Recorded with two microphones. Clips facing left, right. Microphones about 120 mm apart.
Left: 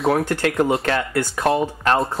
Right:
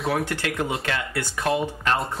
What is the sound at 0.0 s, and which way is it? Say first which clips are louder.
Speech: left 6 dB; 40° left (ahead or behind).